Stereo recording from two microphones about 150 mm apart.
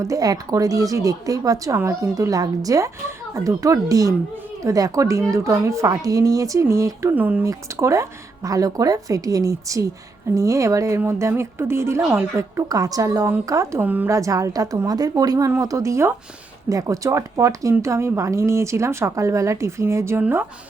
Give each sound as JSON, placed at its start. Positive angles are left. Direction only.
{"t": 0.0, "sound": "speech", "side_deg": -25}